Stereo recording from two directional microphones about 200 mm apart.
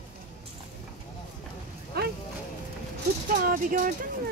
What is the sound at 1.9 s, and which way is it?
Speech, 50° right (ahead or behind).